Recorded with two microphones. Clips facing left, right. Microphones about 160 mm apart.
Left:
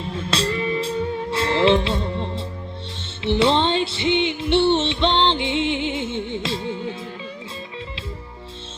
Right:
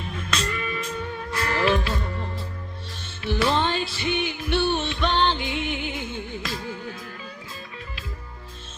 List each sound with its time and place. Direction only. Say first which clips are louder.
0.0 s music: left 5 dB; 30° left (ahead or behind)